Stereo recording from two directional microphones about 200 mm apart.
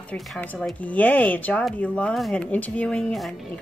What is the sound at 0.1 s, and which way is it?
A woman's voice, 5° left (ahead or behind).